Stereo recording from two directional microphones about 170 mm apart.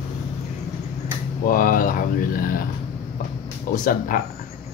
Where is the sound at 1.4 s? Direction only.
55° left (ahead or behind).